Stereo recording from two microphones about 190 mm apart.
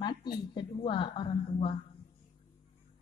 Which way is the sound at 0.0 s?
25° left (ahead or behind).